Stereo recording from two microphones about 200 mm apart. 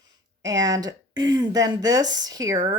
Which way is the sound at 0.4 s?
20° right (ahead or behind).